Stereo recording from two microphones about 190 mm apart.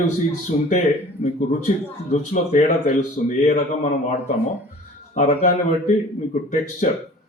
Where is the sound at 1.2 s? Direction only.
40° left (ahead or behind).